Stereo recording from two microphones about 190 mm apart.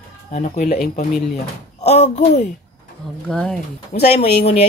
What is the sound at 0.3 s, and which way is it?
Speech, 35° left (ahead or behind).